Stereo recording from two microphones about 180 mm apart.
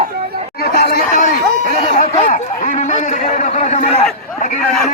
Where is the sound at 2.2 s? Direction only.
45° left (ahead or behind).